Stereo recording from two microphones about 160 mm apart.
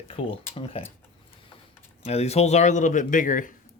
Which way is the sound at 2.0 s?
40° left (ahead or behind).